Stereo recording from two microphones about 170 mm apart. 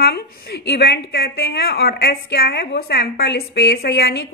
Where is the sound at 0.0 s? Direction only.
70° left (ahead or behind).